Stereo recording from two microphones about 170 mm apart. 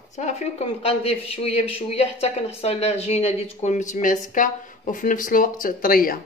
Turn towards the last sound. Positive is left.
turn(degrees=55)  # may be behind; listen again after turning